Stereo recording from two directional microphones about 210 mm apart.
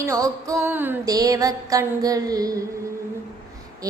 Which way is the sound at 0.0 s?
15° right (ahead or behind).